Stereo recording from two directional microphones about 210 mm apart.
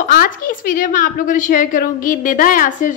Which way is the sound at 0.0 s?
45° left (ahead or behind).